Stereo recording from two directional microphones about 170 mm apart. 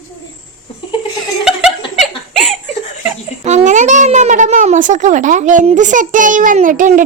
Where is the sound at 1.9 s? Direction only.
Centre (ahead or behind).